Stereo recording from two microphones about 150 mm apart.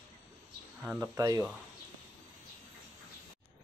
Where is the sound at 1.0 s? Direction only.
20° right (ahead or behind).